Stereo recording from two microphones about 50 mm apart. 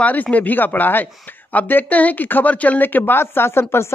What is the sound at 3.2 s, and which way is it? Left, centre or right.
Speech, left.